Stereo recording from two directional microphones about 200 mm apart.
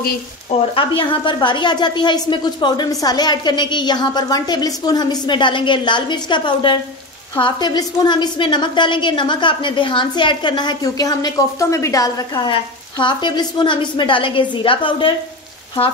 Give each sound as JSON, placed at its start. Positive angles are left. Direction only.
{"t": 0.7, "sound": "speech", "side_deg": 25}